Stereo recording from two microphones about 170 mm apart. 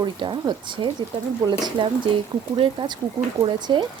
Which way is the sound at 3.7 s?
25° right (ahead or behind).